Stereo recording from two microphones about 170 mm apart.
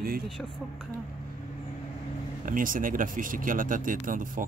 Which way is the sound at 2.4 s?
55° right (ahead or behind).